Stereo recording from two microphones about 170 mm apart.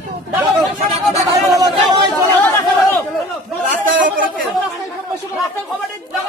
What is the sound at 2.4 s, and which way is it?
Chatter, 15° left (ahead or behind).